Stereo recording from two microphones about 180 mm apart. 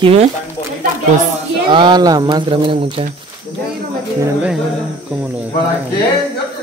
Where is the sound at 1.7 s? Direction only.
25° right (ahead or behind).